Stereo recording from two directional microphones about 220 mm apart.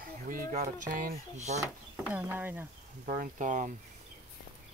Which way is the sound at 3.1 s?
35° right (ahead or behind).